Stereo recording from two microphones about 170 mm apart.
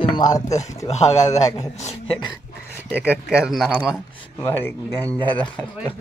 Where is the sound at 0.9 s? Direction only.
40° left (ahead or behind).